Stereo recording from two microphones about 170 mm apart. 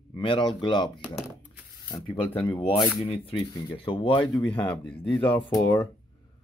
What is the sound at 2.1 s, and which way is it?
Speech, 30° left (ahead or behind).